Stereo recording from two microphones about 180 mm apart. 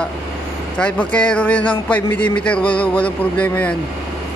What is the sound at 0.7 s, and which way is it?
A man's voice, 5° left (ahead or behind).